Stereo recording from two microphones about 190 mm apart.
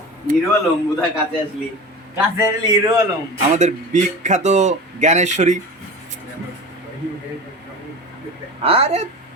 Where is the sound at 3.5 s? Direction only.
40° right (ahead or behind).